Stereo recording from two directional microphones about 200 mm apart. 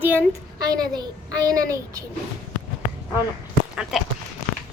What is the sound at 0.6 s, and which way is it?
A woman's voice, 20° right (ahead or behind).